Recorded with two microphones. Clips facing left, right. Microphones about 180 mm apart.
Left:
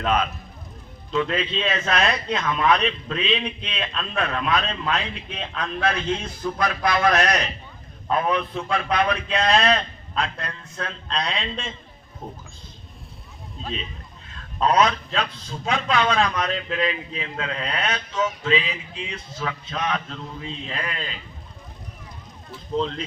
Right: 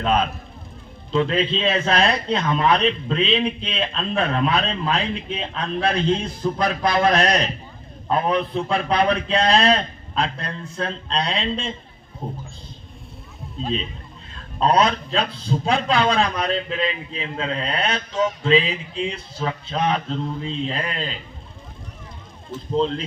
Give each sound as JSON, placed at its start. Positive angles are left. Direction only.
{"t": 0.0, "sound": "a man's voice", "side_deg": -30}
{"t": 14.6, "sound": "a man's voice", "side_deg": -30}
{"t": 22.4, "sound": "a man's voice", "side_deg": -30}